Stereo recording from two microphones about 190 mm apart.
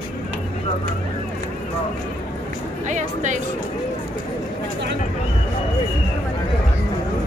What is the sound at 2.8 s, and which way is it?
Speech, 40° right (ahead or behind).